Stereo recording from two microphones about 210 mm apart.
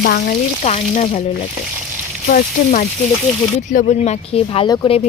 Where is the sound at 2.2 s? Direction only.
40° left (ahead or behind); by 4.9 s 20° left (ahead or behind).